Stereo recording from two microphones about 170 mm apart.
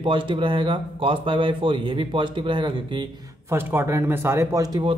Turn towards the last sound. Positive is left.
turn(degrees=-20)  # may be behind; listen again after turning